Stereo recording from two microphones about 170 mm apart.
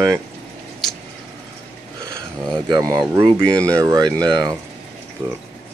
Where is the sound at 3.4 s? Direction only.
5° left (ahead or behind).